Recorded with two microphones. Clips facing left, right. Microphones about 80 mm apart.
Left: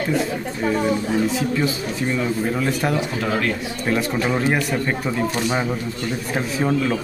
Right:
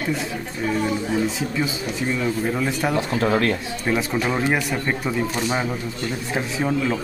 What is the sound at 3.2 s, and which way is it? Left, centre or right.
Speech, right.